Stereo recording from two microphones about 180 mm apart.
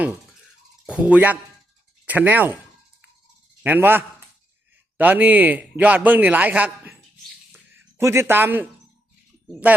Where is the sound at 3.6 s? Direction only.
10° right (ahead or behind).